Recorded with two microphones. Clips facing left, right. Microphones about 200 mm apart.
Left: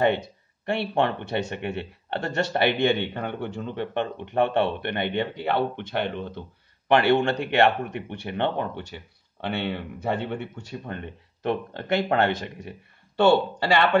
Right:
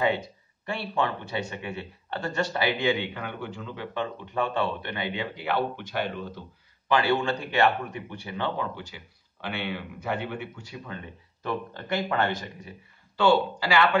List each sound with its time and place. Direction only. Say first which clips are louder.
0.7 s a man's voice: left 5 dB; 65° left (ahead or behind)